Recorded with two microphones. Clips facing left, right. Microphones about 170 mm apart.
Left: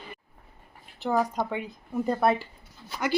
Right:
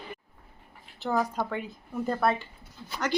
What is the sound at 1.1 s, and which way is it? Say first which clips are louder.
Speech: left 2 dB; 10° left (ahead or behind).